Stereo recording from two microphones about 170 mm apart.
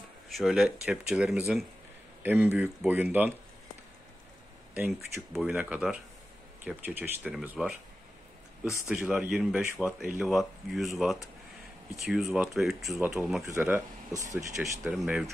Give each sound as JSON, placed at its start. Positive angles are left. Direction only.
{"t": 0.3, "sound": "speech", "side_deg": 0}
{"t": 4.7, "sound": "speech", "side_deg": -15}
{"t": 8.8, "sound": "speech", "side_deg": -5}
{"t": 13.5, "sound": "speech", "side_deg": -15}
{"t": 14.6, "sound": "speech", "side_deg": -5}